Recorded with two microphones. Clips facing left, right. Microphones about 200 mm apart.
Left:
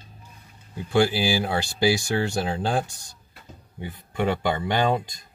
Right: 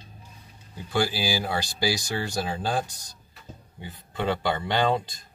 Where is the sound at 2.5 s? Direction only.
20° left (ahead or behind).